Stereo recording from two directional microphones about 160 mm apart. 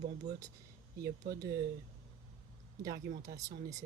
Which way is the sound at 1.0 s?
80° right.